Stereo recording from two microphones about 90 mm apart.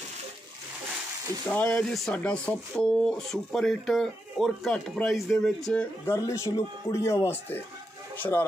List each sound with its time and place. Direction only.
1.5 s speech: 10° left (ahead or behind)
1.8 s speech: centre (ahead or behind)
2.1 s speech: 10° left (ahead or behind)
6.0 s a man's voice: 35° left (ahead or behind)